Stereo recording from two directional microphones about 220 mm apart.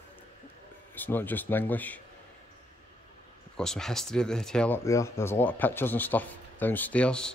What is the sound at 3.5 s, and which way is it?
Speech, 5° left (ahead or behind).